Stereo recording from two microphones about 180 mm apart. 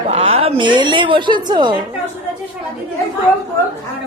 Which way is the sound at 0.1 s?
35° right (ahead or behind).